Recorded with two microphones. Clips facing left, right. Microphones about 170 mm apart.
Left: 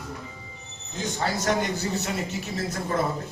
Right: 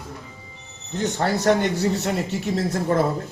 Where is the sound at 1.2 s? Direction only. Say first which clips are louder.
Right 6 dB; 70° right (ahead or behind).